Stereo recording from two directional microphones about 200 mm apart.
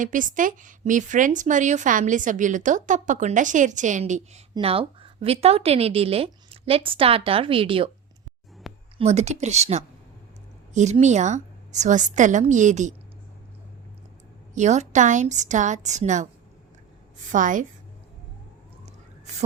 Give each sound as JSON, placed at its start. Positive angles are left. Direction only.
{"t": 0.0, "sound": "a woman's voice", "side_deg": -40}
{"t": 4.5, "sound": "a woman's voice", "side_deg": -30}
{"t": 8.7, "sound": "a sound", "side_deg": 0}
{"t": 9.0, "sound": "a woman's voice", "side_deg": -35}
{"t": 14.5, "sound": "a woman's voice", "side_deg": -35}
{"t": 17.3, "sound": "a woman's voice", "side_deg": -40}
{"t": 19.2, "sound": "a sound", "side_deg": -35}